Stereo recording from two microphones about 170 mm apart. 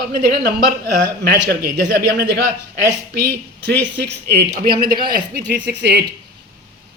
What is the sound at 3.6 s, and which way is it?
Speech, 80° right.